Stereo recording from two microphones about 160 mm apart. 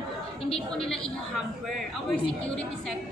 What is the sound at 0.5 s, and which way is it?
Speech, 5° left (ahead or behind).